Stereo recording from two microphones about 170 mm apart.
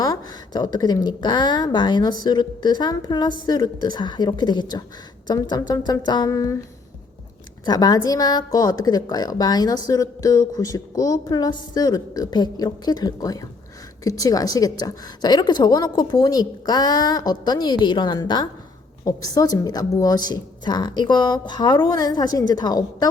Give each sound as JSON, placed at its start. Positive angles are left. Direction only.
{"t": 0.0, "sound": "a woman's voice", "side_deg": 25}
{"t": 7.6, "sound": "a woman's voice", "side_deg": 25}